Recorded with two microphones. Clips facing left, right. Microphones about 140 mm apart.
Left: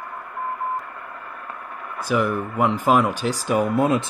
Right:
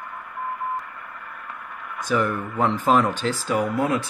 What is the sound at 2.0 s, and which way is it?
Speech, 10° left (ahead or behind).